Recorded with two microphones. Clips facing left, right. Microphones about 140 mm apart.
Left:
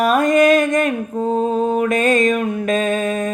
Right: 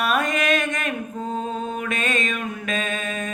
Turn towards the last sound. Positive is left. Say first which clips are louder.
# left 9 dB
turn(degrees=40)  # may be behind; listen again after turning